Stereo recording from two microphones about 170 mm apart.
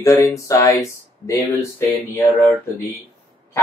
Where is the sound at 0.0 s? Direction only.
20° left (ahead or behind).